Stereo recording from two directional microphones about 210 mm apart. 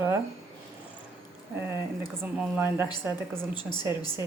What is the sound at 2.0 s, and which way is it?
Speech, 10° right (ahead or behind).